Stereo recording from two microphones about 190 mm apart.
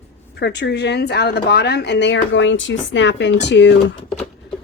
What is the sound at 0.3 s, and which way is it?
A woman's voice, 60° left (ahead or behind).